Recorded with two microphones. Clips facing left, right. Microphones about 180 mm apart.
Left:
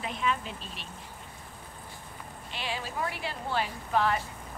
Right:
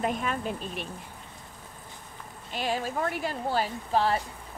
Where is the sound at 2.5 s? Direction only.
45° right (ahead or behind).